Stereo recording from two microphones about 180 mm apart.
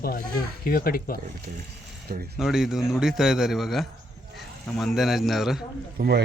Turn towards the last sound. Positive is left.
turn(degrees=-65)  # may be behind; listen again after turning